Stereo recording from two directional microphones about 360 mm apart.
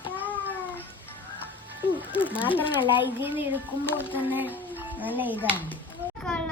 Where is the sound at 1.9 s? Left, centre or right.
Centre.